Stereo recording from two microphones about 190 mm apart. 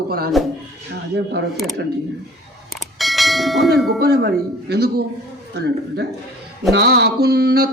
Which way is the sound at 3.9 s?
55° right (ahead or behind).